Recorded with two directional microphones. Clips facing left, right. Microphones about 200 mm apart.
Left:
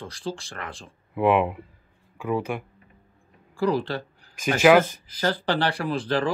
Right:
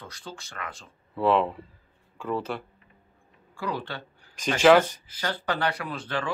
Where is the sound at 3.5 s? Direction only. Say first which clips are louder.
Left 9 dB; 35° left (ahead or behind).